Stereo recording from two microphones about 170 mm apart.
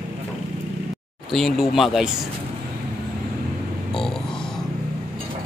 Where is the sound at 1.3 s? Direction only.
Centre (ahead or behind).